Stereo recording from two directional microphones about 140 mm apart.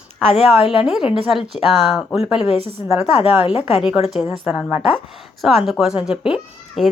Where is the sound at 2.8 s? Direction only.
20° right (ahead or behind).